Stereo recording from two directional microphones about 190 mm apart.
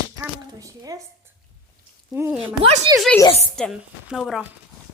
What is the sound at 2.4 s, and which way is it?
Speech, 30° right (ahead or behind).